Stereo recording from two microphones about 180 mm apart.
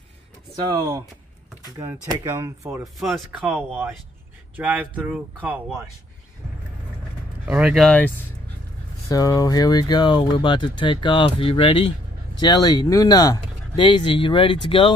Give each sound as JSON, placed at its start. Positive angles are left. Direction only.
{"t": 0.7, "sound": "speech", "side_deg": -20}
{"t": 2.2, "sound": "speech", "side_deg": -15}
{"t": 2.8, "sound": "speech", "side_deg": 0}
{"t": 7.4, "sound": "speech", "side_deg": -5}
{"t": 9.1, "sound": "speech", "side_deg": 20}